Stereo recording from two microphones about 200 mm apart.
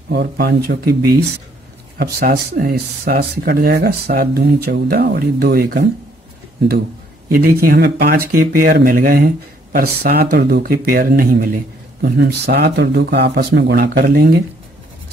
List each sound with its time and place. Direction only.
0.1 s speech: 55° right (ahead or behind)
7.2 s speech: 45° right (ahead or behind)